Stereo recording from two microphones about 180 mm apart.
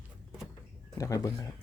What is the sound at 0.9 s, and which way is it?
Speech, 20° left (ahead or behind).